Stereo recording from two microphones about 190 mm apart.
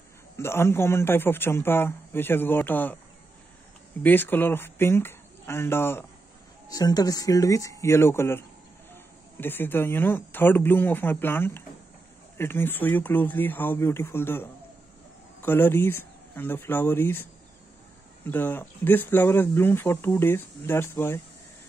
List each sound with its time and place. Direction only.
0.4 s speech: 15° left (ahead or behind)
4.0 s speech: 10° left (ahead or behind)
18.3 s speech: 10° left (ahead or behind)